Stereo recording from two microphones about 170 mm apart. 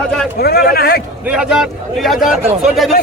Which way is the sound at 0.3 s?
65° left (ahead or behind).